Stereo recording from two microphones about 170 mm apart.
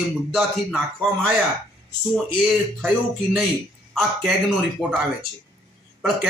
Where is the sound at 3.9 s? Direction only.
Centre (ahead or behind).